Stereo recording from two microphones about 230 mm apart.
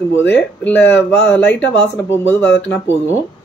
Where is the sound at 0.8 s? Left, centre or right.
Left.